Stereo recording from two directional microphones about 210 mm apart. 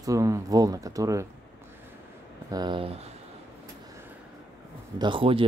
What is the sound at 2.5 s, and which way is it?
Speech, 20° right (ahead or behind).